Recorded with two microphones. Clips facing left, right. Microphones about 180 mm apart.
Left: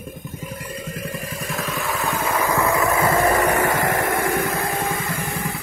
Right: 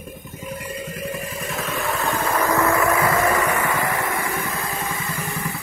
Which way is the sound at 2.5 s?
15° left (ahead or behind).